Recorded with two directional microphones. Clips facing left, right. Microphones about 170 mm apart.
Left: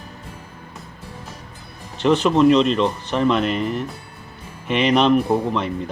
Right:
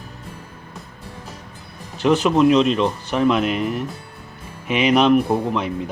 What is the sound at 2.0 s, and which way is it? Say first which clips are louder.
Speech: even; 5° right (ahead or behind).